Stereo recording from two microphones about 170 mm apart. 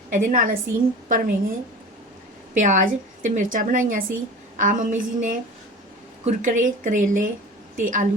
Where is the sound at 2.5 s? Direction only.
45° right (ahead or behind).